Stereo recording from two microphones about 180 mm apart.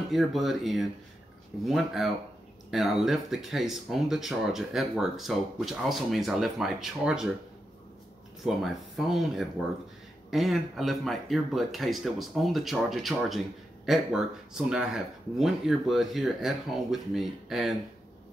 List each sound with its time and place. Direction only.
0.1 s speech: centre (ahead or behind)
8.5 s speech: centre (ahead or behind)